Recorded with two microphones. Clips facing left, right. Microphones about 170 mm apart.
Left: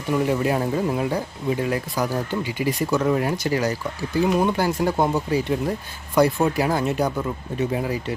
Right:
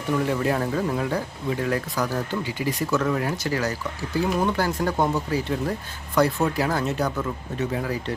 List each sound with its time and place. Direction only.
0.1 s speech: 15° left (ahead or behind)